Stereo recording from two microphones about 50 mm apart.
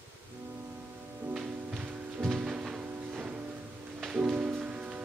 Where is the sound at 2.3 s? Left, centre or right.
Centre.